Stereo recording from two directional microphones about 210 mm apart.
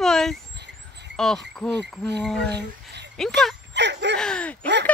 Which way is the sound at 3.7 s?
55° right (ahead or behind).